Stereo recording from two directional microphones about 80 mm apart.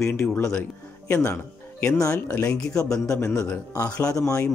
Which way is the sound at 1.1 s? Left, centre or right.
Left.